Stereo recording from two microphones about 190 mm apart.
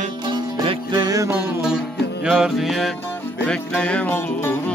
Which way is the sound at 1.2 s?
10° right (ahead or behind).